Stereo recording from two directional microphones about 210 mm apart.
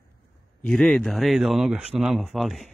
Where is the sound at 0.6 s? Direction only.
5° left (ahead or behind).